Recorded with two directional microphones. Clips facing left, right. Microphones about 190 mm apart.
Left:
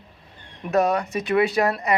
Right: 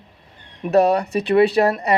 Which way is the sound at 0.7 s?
35° right (ahead or behind).